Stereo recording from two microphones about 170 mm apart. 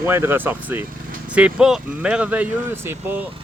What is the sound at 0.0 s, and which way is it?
Speech, 15° right (ahead or behind).